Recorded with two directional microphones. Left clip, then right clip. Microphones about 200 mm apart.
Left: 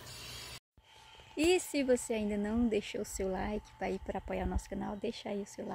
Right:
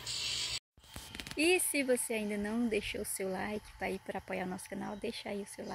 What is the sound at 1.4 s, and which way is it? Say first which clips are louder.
Speech: even; 15° left (ahead or behind).